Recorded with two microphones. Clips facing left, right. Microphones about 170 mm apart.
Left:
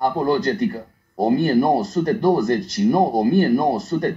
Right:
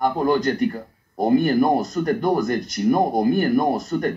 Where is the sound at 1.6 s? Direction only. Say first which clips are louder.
Left 1 dB; 30° left (ahead or behind).